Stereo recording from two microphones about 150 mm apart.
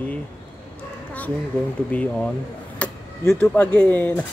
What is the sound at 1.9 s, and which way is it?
Speech, 10° left (ahead or behind).